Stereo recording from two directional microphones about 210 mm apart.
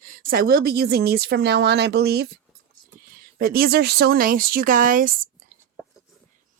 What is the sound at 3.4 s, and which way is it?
Speech, 45° right (ahead or behind).